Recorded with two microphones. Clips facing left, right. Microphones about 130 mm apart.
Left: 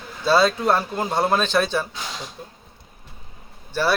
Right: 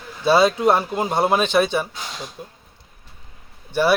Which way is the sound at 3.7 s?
15° right (ahead or behind).